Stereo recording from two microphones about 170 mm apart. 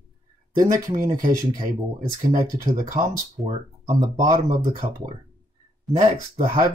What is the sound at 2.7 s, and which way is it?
Speech, 50° right (ahead or behind).